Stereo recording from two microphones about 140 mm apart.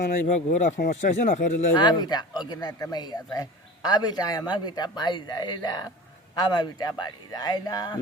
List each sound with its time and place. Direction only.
0.3 s speech: 55° left (ahead or behind)
1.7 s speech: 30° left (ahead or behind)